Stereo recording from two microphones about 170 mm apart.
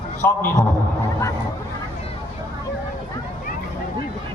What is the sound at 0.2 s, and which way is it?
Speech, 15° left (ahead or behind).